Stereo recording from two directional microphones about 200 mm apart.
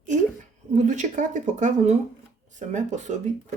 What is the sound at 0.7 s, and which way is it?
Speech, 40° right (ahead or behind).